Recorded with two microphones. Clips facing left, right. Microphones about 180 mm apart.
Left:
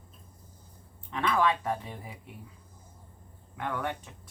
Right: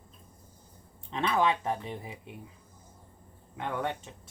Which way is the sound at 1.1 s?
25° right (ahead or behind).